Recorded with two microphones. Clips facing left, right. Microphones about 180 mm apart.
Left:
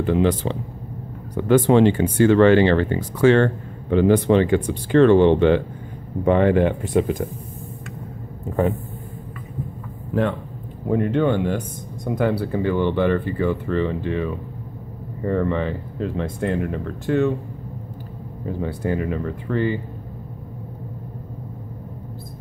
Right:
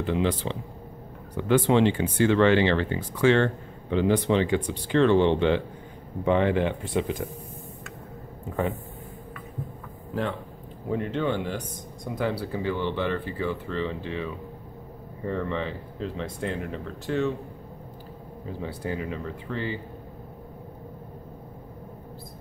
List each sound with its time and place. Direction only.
0.0 s speech: 50° left (ahead or behind)
10.9 s speech: 55° left (ahead or behind)
18.6 s speech: 55° left (ahead or behind)